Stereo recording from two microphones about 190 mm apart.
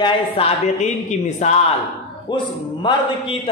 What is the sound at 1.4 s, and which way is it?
Speech, 35° left (ahead or behind).